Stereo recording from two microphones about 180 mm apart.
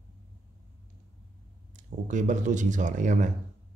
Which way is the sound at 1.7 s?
45° right (ahead or behind).